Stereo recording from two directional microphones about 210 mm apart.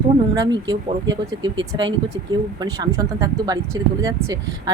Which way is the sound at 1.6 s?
65° right (ahead or behind).